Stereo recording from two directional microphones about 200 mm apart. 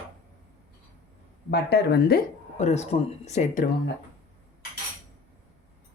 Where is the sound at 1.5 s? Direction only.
55° left (ahead or behind).